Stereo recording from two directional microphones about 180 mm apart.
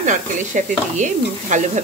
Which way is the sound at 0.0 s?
45° right (ahead or behind).